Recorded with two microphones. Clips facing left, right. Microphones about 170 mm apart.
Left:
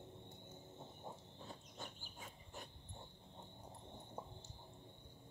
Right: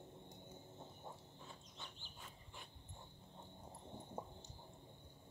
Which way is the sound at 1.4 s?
45° left (ahead or behind).